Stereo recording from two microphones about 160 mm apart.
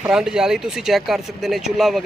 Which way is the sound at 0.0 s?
5° right (ahead or behind).